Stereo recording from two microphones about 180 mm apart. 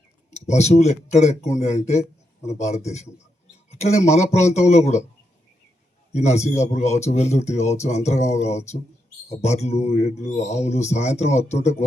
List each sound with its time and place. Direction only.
0.3 s a man's voice: 40° left (ahead or behind)
3.7 s a sound: 40° left (ahead or behind)
4.1 s speech: 40° left (ahead or behind)
6.1 s speech: 40° left (ahead or behind)